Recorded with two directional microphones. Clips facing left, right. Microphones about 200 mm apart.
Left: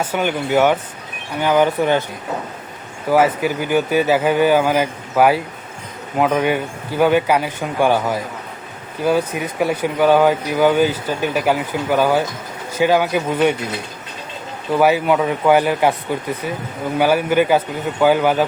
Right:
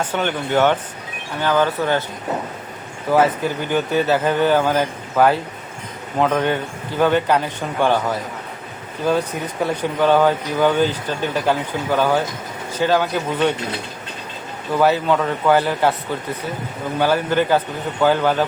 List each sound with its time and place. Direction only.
0.0 s speech: 10° left (ahead or behind)
3.1 s speech: 10° left (ahead or behind)
14.8 s speech: 15° left (ahead or behind)